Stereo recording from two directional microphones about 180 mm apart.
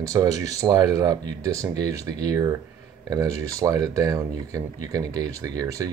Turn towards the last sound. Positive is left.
turn(degrees=-20)  # may be behind; listen again after turning